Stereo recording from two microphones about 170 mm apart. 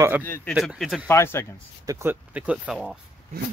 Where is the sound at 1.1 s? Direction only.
15° left (ahead or behind).